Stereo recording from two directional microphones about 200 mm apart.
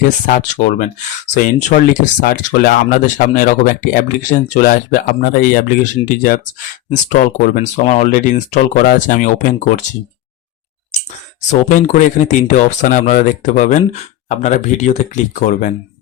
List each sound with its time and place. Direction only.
0.3 s speech: 35° left (ahead or behind)
11.4 s speech: 35° left (ahead or behind)